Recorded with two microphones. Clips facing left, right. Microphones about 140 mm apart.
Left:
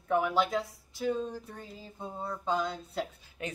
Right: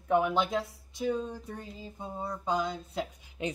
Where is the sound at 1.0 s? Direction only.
10° right (ahead or behind).